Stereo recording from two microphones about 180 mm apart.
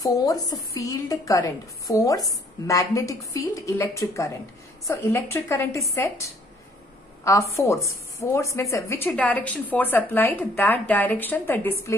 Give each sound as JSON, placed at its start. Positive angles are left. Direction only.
{"t": 0.0, "sound": "a woman's voice", "side_deg": 20}
{"t": 7.5, "sound": "a woman's voice", "side_deg": 15}